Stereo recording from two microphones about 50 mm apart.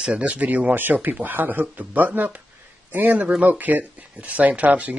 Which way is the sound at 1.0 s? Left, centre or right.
Right.